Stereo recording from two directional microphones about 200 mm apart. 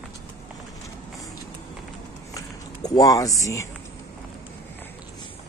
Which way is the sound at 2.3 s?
15° left (ahead or behind).